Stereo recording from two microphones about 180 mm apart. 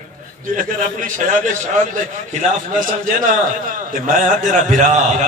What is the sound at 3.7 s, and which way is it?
A man's voice, 45° right (ahead or behind).